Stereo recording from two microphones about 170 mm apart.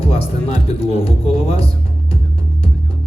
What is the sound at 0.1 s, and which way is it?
Speech, 35° left (ahead or behind).